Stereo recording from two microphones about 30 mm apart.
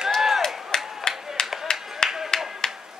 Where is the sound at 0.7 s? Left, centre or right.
Left.